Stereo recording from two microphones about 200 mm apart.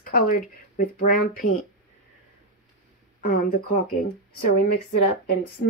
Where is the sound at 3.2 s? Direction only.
45° left (ahead or behind).